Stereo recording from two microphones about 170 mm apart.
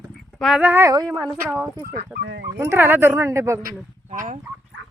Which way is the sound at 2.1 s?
85° right.